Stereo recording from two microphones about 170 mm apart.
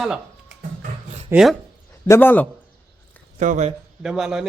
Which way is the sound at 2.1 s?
10° left (ahead or behind).